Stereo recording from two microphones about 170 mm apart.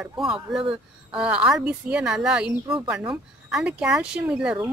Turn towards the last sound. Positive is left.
turn(degrees=-5)  # may be behind; listen again after turning